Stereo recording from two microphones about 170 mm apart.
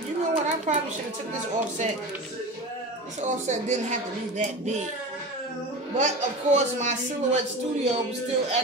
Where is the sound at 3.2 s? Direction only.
45° right (ahead or behind).